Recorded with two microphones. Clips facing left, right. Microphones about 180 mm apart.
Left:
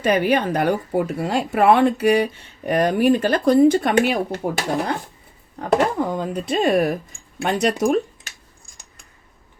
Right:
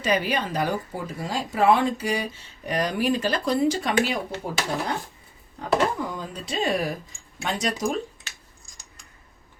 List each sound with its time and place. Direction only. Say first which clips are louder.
0.0 s speech: left 6 dB; 55° left (ahead or behind)